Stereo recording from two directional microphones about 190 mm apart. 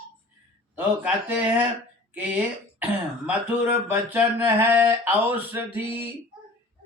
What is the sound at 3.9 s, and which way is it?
Speech, 10° right (ahead or behind).